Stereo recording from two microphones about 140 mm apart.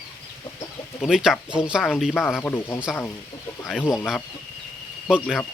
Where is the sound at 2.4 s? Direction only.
15° left (ahead or behind).